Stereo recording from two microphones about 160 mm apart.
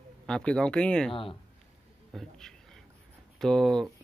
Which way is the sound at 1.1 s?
35° left (ahead or behind).